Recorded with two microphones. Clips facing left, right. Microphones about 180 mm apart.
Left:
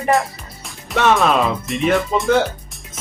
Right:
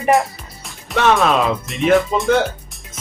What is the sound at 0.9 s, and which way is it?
Speech, centre (ahead or behind).